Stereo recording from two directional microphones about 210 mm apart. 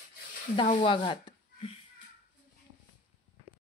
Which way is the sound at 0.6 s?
25° left (ahead or behind).